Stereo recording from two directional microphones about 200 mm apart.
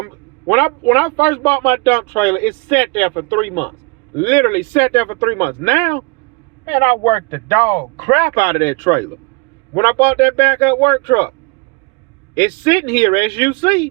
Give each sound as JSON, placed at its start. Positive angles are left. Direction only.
{"t": 0.4, "sound": "speech", "side_deg": 10}
{"t": 7.0, "sound": "speech", "side_deg": 20}
{"t": 12.3, "sound": "speech", "side_deg": 15}